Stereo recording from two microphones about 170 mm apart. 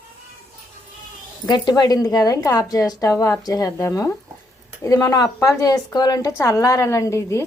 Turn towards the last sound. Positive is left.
turn(degrees=15)  # may be behind; listen again after turning